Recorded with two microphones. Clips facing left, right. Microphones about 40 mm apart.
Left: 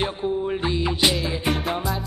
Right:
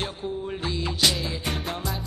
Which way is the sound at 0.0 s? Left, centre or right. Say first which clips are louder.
Left 6 dB; centre.